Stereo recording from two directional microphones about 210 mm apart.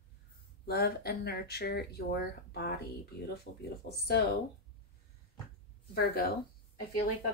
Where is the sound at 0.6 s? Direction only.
50° left (ahead or behind).